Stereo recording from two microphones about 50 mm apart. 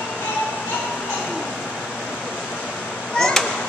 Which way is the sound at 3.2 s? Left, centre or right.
Centre.